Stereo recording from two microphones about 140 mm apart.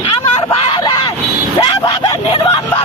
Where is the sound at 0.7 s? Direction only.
30° left (ahead or behind).